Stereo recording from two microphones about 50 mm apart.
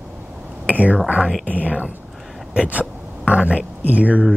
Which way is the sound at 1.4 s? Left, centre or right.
Left.